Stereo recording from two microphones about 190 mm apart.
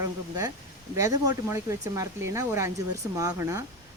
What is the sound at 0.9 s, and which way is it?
Speech, 15° right (ahead or behind).